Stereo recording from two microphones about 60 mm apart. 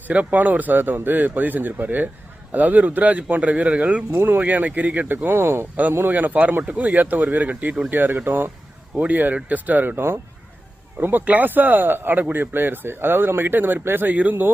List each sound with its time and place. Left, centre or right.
0.1 s speech: right
6.1 s speech: right
11.0 s speech: right